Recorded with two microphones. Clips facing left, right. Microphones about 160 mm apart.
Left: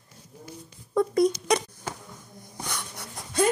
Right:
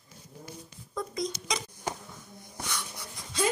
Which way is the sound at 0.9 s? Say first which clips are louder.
Left 12 dB; 65° left (ahead or behind).